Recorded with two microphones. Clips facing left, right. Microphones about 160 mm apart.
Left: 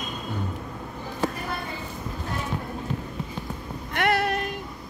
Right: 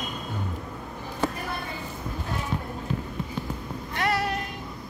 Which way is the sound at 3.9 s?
60° left (ahead or behind).